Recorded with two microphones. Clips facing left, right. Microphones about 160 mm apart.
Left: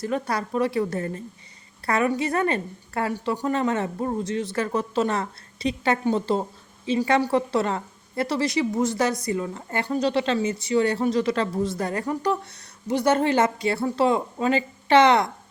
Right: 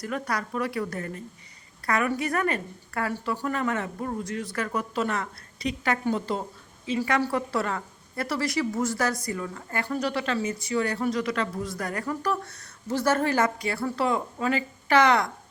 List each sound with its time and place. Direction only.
0.0 s a woman's voice: 25° left (ahead or behind)